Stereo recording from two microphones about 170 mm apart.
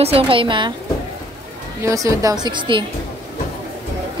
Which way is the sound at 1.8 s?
20° right (ahead or behind).